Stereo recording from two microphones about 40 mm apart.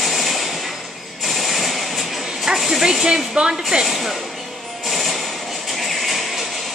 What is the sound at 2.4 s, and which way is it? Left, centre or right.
Speech, centre.